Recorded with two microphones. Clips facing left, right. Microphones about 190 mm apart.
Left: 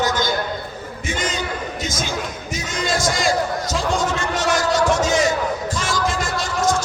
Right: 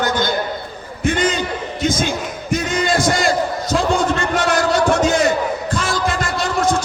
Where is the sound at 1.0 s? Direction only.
60° right (ahead or behind).